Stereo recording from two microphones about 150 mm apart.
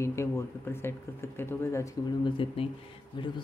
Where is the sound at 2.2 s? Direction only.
35° left (ahead or behind).